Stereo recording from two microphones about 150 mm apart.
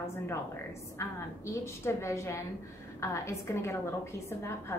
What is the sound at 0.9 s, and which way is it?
A woman's voice, 20° left (ahead or behind).